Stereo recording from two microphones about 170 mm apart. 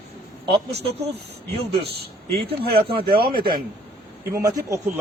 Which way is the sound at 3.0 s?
60° right (ahead or behind).